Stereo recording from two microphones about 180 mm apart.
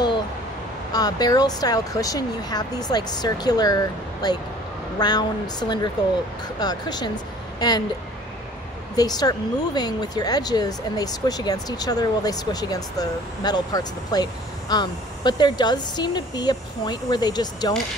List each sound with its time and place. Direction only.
0.9 s speech: 20° left (ahead or behind)
8.9 s speech: 20° left (ahead or behind)